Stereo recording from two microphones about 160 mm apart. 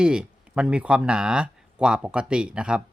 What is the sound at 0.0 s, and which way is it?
Speech, 5° right (ahead or behind).